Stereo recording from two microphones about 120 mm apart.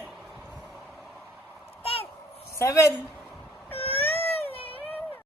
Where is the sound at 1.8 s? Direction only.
50° left (ahead or behind).